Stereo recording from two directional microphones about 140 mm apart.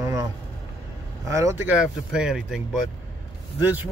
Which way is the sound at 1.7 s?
5° right (ahead or behind).